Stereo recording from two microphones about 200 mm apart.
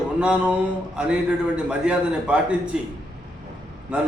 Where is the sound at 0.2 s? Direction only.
5° right (ahead or behind).